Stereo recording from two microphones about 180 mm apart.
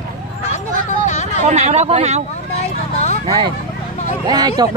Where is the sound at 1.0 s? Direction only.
40° left (ahead or behind).